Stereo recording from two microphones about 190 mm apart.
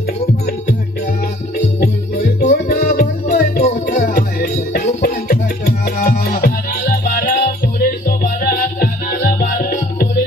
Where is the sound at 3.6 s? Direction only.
40° left (ahead or behind).